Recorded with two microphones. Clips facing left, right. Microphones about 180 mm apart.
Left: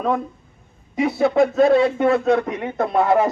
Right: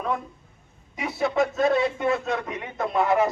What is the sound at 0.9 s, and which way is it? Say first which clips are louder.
Speech: left 7 dB; 55° left (ahead or behind).